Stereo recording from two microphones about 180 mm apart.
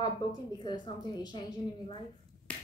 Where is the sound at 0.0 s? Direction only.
25° left (ahead or behind).